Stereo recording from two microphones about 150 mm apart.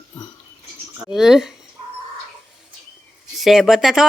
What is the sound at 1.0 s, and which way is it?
Speech, 5° right (ahead or behind).